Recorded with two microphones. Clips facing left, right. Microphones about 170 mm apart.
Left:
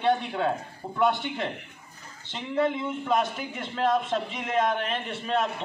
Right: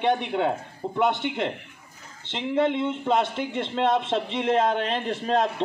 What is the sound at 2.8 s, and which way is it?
A man's voice, 25° right (ahead or behind).